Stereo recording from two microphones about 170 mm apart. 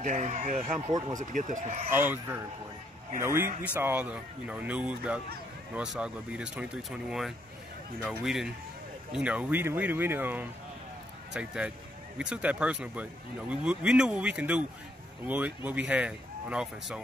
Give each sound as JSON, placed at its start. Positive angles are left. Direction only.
{"t": 0.0, "sound": "speech", "side_deg": -45}
{"t": 0.8, "sound": "speech", "side_deg": -20}
{"t": 1.3, "sound": "speech", "side_deg": -45}
{"t": 1.9, "sound": "speech", "side_deg": -10}